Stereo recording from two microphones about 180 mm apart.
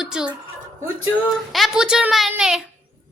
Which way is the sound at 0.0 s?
5° right (ahead or behind).